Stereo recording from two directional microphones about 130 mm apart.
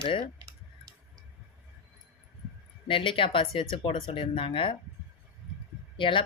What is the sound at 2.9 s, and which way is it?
Speech, 40° left (ahead or behind).